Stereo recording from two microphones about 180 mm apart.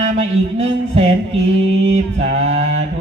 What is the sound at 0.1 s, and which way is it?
Speech, 35° right (ahead or behind).